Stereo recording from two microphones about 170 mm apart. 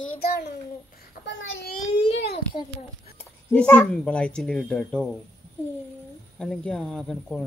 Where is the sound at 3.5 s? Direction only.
5° left (ahead or behind).